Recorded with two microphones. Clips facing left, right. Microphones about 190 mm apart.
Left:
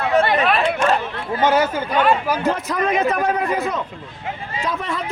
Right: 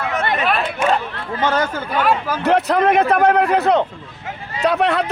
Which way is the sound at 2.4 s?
65° right (ahead or behind).